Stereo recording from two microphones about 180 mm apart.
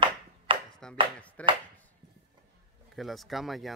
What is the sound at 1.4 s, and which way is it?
Speech, 5° left (ahead or behind).